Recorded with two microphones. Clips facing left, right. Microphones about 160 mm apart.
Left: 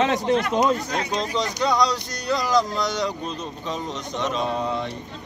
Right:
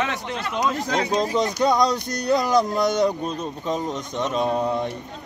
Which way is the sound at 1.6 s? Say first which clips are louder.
Right 1 dB; 50° right (ahead or behind).